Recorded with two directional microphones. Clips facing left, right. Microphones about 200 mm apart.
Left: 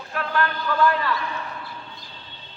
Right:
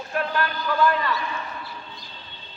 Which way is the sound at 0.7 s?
Centre (ahead or behind).